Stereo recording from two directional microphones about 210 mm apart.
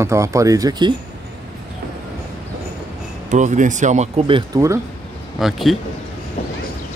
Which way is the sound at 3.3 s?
35° right (ahead or behind).